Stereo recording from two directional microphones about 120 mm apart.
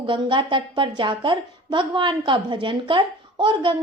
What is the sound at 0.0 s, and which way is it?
A woman's voice, 45° right (ahead or behind).